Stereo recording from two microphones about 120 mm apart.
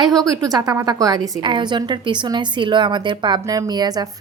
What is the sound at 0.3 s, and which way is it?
A woman's voice, 35° right (ahead or behind).